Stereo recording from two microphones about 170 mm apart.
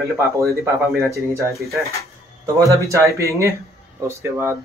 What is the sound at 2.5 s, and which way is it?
Speech, 20° right (ahead or behind).